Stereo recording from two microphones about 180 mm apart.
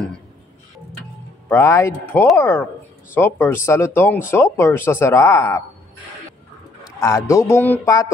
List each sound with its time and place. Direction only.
1.5 s speech: 15° left (ahead or behind)
6.8 s speech: 20° left (ahead or behind)